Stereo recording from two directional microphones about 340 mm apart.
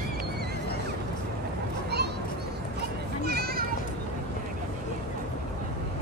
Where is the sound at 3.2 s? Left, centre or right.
Right.